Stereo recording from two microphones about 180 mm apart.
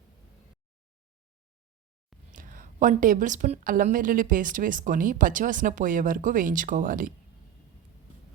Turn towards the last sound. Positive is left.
turn(degrees=-50)  # may be behind; listen again after turning